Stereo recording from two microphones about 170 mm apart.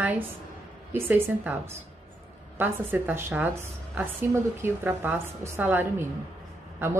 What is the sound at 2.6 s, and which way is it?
Speech, 10° right (ahead or behind).